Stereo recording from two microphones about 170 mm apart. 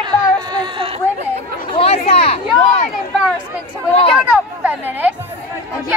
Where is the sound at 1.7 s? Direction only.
35° left (ahead or behind).